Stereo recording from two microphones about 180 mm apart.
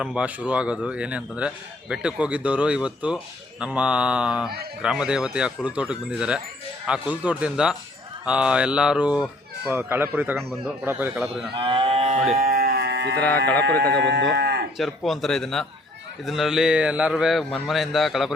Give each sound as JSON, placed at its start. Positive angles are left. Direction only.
{"t": 0.0, "sound": "a man's voice", "side_deg": -5}
{"t": 11.5, "sound": "livestock", "side_deg": -30}
{"t": 12.4, "sound": "a sound", "side_deg": -55}
{"t": 13.9, "sound": "speech", "side_deg": -70}
{"t": 14.8, "sound": "a man's voice", "side_deg": 0}